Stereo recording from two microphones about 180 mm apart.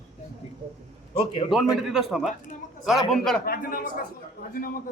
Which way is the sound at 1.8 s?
Centre (ahead or behind).